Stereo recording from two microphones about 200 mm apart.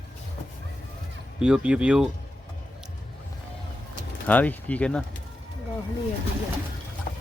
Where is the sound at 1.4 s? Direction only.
5° right (ahead or behind).